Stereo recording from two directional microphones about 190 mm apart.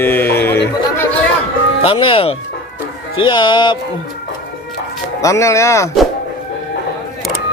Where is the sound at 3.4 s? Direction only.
25° left (ahead or behind).